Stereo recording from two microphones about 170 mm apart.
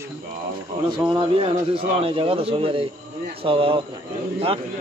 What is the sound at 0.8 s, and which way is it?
Speech, 25° right (ahead or behind).